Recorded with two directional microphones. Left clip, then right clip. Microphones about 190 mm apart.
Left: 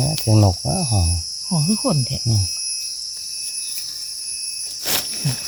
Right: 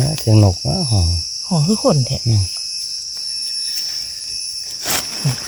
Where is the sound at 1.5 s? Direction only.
50° right (ahead or behind).